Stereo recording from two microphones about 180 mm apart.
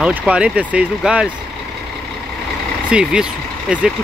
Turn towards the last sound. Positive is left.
turn(degrees=-5)  # may be behind; listen again after turning